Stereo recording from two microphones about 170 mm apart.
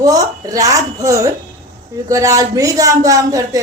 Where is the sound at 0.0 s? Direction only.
20° right (ahead or behind).